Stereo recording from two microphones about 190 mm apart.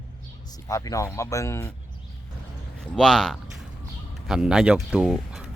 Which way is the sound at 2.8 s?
Centre (ahead or behind).